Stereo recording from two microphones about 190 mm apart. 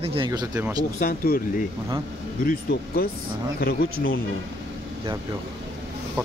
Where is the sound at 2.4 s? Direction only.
55° left (ahead or behind).